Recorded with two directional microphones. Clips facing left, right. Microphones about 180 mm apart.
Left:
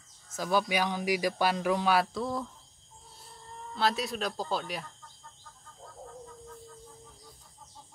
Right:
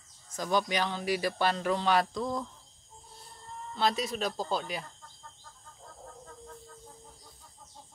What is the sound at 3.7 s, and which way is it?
Speech, centre (ahead or behind).